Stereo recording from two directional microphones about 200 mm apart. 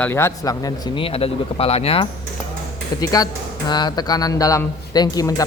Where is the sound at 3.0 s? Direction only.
20° left (ahead or behind).